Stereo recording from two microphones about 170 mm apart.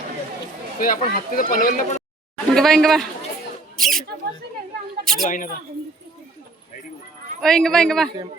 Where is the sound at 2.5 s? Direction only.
Centre (ahead or behind).